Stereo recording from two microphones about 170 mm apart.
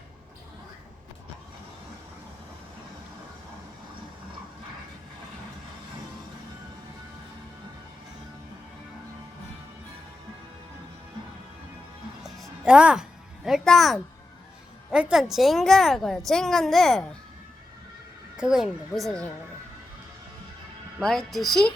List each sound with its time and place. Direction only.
12.2 s music: 5° right (ahead or behind)
14.8 s a woman's voice: 5° right (ahead or behind)
18.3 s a woman's voice: 5° right (ahead or behind)
21.0 s a woman's voice: 5° left (ahead or behind)